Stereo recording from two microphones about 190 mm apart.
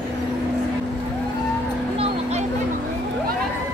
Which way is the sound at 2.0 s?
35° right (ahead or behind).